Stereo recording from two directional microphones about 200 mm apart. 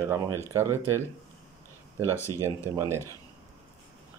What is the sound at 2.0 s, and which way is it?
Speech, 10° right (ahead or behind).